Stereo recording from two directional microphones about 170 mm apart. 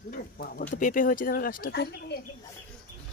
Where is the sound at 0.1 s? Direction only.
60° left (ahead or behind).